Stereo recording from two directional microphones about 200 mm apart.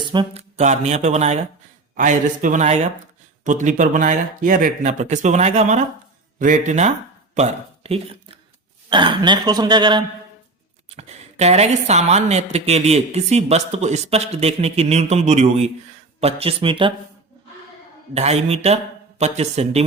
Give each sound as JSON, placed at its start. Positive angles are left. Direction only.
{"t": 0.1, "sound": "speech", "side_deg": -25}
{"t": 0.5, "sound": "speech", "side_deg": -35}
{"t": 10.9, "sound": "speech", "side_deg": -30}
{"t": 18.1, "sound": "speech", "side_deg": -35}